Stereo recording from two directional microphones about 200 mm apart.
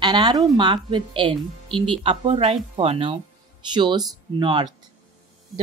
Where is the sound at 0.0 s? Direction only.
20° right (ahead or behind).